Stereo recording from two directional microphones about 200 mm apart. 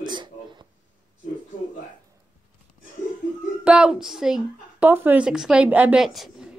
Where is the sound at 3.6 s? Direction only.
5° right (ahead or behind).